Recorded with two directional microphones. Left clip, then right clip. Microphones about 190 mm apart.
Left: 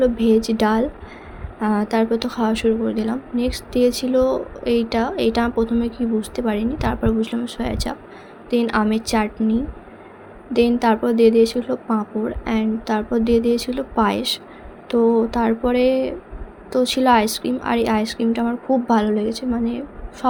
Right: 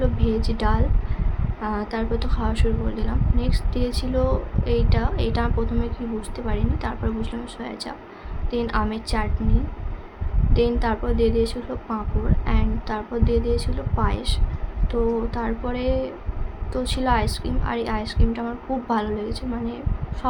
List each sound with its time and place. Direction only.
0.0 s a woman's voice: 35° left (ahead or behind)
10.5 s a woman's voice: 35° left (ahead or behind)